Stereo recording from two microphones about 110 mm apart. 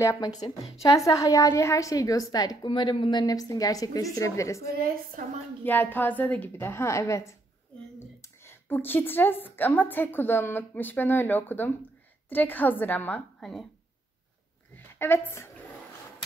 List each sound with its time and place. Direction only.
0.0 s a woman's voice: 30° left (ahead or behind)
2.7 s a woman's voice: 50° left (ahead or behind); by 4.6 s 30° left (ahead or behind)
5.6 s a woman's voice: 15° left (ahead or behind)
13.4 s speech: centre (ahead or behind)
15.0 s a woman's voice: 20° left (ahead or behind)